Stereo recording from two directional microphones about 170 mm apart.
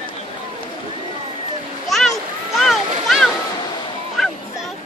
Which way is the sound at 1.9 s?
Centre (ahead or behind).